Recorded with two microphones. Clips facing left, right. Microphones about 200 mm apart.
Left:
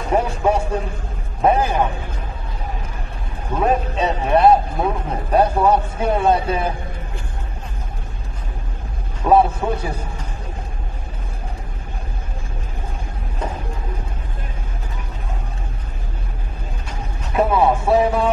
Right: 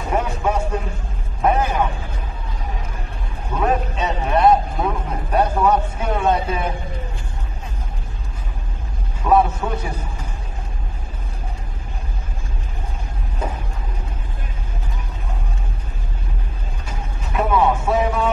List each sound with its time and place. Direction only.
0.1 s music: 30° left (ahead or behind)
3.6 s a man's voice: 30° left (ahead or behind)
9.3 s music: 30° left (ahead or behind)
17.4 s music: 30° left (ahead or behind)